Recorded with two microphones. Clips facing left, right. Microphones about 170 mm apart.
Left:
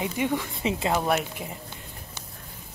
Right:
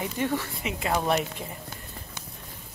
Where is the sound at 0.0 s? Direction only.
15° left (ahead or behind).